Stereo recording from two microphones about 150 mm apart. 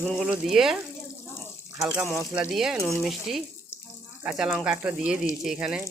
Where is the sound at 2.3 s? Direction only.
5° right (ahead or behind).